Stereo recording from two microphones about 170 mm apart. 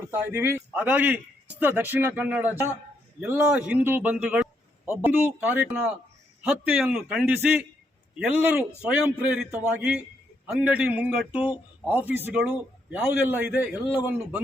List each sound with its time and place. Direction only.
0.1 s a man's voice: 15° right (ahead or behind)